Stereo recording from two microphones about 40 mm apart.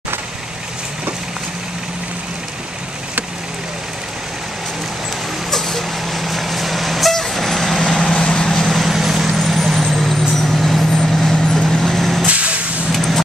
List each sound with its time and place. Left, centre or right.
5.5 s vehicle: centre
8.0 s vehicle: left
8.6 s vehicle: centre
12.3 s vehicle: right
12.9 s vehicle: centre